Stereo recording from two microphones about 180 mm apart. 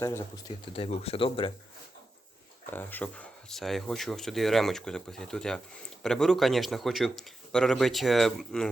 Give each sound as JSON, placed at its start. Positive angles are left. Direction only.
{"t": 0.0, "sound": "speech", "side_deg": 15}
{"t": 0.7, "sound": "speech", "side_deg": 35}
{"t": 2.6, "sound": "speech", "side_deg": 10}